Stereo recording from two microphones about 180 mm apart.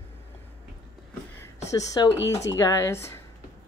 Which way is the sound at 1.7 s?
20° left (ahead or behind).